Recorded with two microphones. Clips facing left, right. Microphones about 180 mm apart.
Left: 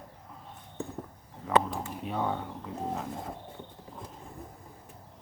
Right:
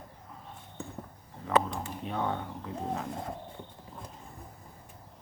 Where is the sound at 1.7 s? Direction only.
5° left (ahead or behind).